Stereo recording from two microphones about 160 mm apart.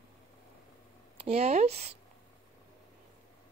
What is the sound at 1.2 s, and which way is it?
Speech, 40° right (ahead or behind).